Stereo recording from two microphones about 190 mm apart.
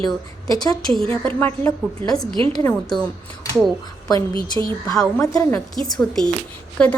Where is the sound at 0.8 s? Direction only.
5° left (ahead or behind).